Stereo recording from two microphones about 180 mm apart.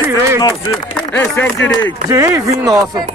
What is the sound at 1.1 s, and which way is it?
Speech, 10° left (ahead or behind).